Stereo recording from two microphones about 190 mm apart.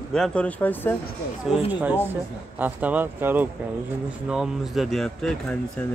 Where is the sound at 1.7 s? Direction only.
10° right (ahead or behind).